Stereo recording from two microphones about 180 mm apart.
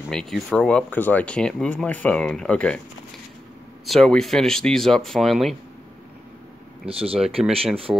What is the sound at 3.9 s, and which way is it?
Speech, 5° left (ahead or behind).